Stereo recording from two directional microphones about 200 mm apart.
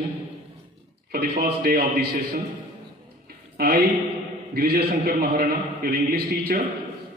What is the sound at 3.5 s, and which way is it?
A woman's voice, 50° right (ahead or behind).